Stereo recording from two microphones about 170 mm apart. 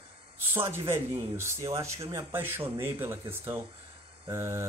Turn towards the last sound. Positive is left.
turn(degrees=-15)  # may be behind; listen again after turning